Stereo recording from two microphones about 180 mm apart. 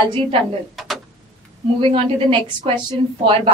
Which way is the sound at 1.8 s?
35° right (ahead or behind).